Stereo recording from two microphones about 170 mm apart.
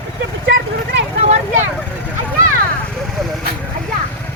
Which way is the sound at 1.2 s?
40° right (ahead or behind).